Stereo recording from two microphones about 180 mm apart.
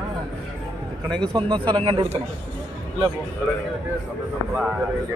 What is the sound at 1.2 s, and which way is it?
Speech, 25° right (ahead or behind).